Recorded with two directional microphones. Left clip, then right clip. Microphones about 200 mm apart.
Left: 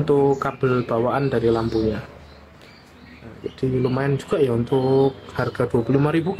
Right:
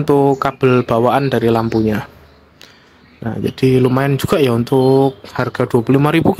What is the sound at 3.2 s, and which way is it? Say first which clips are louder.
Speech: right 11 dB; 50° right (ahead or behind).